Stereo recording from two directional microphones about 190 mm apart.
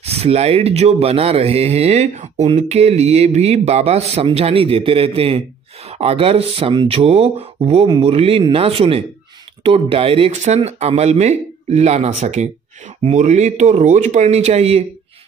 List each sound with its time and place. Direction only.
0.0 s speech: 35° right (ahead or behind)